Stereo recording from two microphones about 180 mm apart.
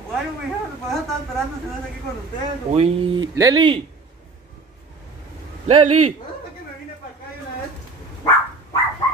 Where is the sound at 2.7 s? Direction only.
30° right (ahead or behind).